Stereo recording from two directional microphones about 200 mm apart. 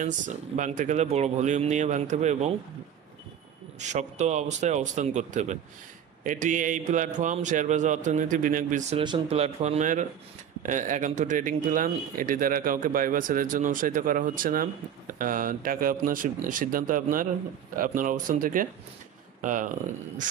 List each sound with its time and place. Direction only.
0.0 s a man's voice: 40° right (ahead or behind)
3.8 s a man's voice: 35° right (ahead or behind)
8.9 s a man's voice: 25° right (ahead or behind); by 20.2 s 40° right (ahead or behind)